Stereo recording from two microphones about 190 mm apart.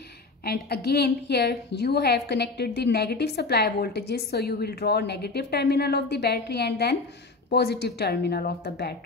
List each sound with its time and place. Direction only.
0.5 s a woman's voice: 55° left (ahead or behind)